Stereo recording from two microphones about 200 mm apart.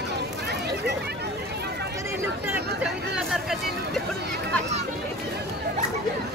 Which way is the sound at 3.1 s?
Centre (ahead or behind).